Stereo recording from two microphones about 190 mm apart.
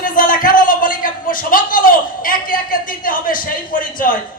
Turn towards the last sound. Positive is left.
turn(degrees=45)  # may be behind; listen again after turning